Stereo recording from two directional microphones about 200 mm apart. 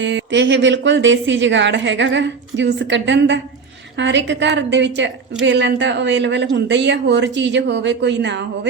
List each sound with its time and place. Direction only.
0.0 s a woman's voice: 65° right (ahead or behind)